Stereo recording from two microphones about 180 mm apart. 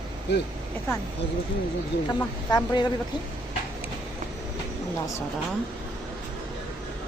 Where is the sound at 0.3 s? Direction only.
70° left (ahead or behind).